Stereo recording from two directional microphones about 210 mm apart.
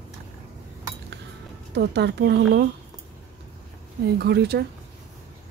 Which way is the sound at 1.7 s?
55° right (ahead or behind).